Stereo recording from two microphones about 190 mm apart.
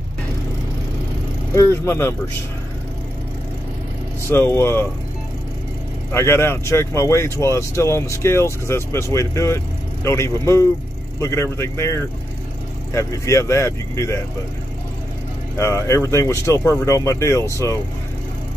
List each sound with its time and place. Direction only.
1.5 s speech: 15° left (ahead or behind)
4.3 s speech: 10° left (ahead or behind)
6.1 s speech: 15° left (ahead or behind)
15.5 s speech: 15° left (ahead or behind)